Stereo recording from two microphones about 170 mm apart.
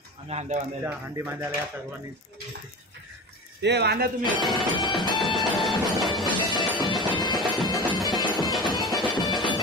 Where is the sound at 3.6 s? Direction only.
85° right; by 4.4 s 65° right (ahead or behind).